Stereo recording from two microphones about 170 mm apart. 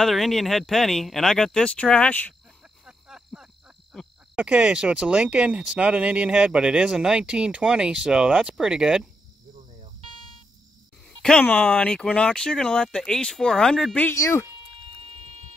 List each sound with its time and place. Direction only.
0.0 s speech: centre (ahead or behind)
2.8 s cricket: 5° right (ahead or behind)
3.9 s speech: 5° right (ahead or behind)
10.0 s a sound: 30° right (ahead or behind)
11.1 s speech: 5° left (ahead or behind)
15.0 s buzzer: 40° right (ahead or behind)